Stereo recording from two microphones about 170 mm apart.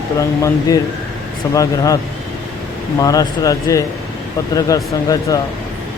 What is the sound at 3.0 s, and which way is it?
Speech, 20° left (ahead or behind).